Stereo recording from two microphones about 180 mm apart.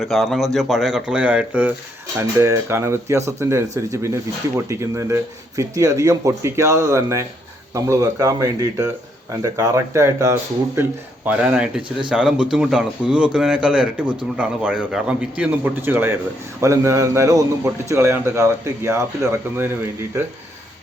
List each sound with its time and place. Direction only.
0.0 s speech: centre (ahead or behind)